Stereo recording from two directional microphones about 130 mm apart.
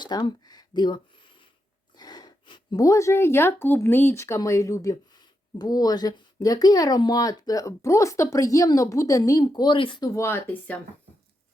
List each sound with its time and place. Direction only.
0.0 s speech: 35° left (ahead or behind)
10.2 s speech: 20° left (ahead or behind)